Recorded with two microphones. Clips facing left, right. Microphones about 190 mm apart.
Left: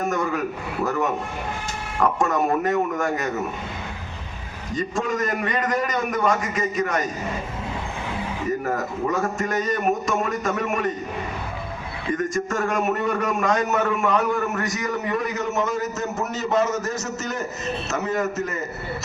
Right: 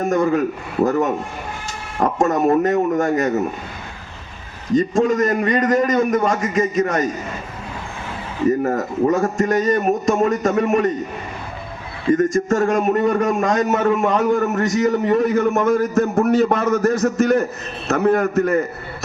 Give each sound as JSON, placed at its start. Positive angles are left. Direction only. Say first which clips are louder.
{"t": 0.0, "sound": "a man's voice", "louder": "right 6 dB", "side_deg": -45}
{"t": 2.0, "sound": "a man's voice", "louder": "right 4 dB", "side_deg": -45}
{"t": 4.7, "sound": "a man's voice", "louder": "right 9 dB", "side_deg": -45}
{"t": 8.6, "sound": "a man's voice", "louder": "right 7 dB", "side_deg": -40}
{"t": 12.1, "sound": "a man's voice", "louder": "right 8 dB", "side_deg": -45}
{"t": 14.8, "sound": "a man's voice", "louder": "right 9 dB", "side_deg": -25}
{"t": 15.1, "sound": "a man's voice", "louder": "right 8 dB", "side_deg": -50}